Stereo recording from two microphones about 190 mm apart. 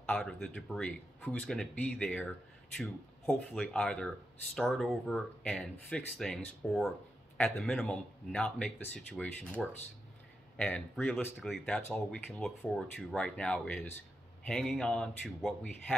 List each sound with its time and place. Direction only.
0.0 s speech: 5° left (ahead or behind)